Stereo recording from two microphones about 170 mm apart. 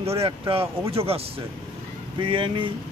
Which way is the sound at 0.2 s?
35° right (ahead or behind).